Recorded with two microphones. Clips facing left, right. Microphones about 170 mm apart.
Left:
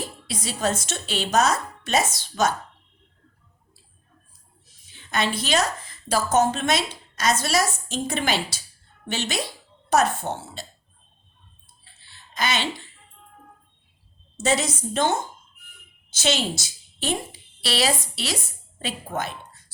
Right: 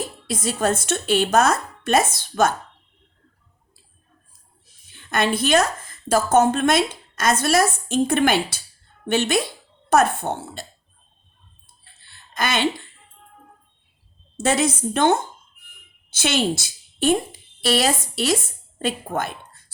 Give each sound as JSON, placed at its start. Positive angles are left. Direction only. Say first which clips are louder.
{"t": 0.3, "sound": "speech", "louder": "right 4 dB", "side_deg": -50}
{"t": 4.9, "sound": "a woman's voice", "louder": "right 4 dB", "side_deg": -55}
{"t": 12.0, "sound": "a sound", "louder": "right 2 dB", "side_deg": -55}
{"t": 14.3, "sound": "a woman's voice", "louder": "right 3 dB", "side_deg": -55}